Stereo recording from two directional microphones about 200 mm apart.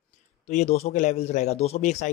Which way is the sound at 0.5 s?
35° left (ahead or behind).